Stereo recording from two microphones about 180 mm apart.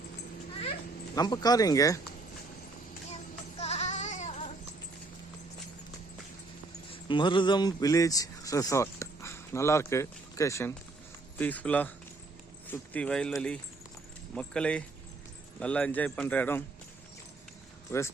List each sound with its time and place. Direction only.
1.1 s speech: 20° left (ahead or behind)
3.6 s goat: 35° left (ahead or behind)
6.9 s speech: 25° left (ahead or behind); by 16.6 s 10° left (ahead or behind)
17.9 s speech: 15° left (ahead or behind)